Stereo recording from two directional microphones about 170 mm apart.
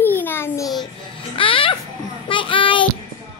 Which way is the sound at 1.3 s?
30° left (ahead or behind).